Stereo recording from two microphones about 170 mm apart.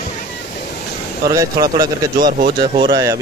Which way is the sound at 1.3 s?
20° right (ahead or behind).